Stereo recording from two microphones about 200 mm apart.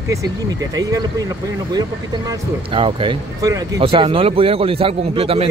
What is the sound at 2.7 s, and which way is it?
A man's voice, 25° right (ahead or behind).